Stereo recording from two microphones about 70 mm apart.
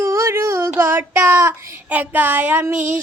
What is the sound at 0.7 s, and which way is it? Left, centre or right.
Child singing, right.